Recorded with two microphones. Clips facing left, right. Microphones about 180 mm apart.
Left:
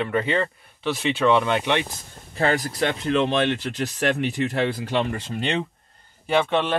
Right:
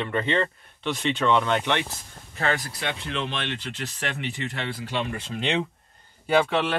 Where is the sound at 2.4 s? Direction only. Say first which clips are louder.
Left 6 dB; 40° left (ahead or behind).